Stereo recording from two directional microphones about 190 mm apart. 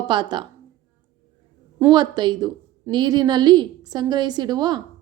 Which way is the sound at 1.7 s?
20° right (ahead or behind).